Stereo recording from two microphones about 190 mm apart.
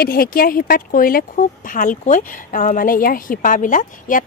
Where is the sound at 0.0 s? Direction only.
50° left (ahead or behind).